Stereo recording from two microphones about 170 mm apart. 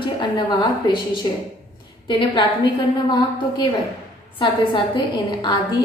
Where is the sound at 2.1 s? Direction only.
30° left (ahead or behind).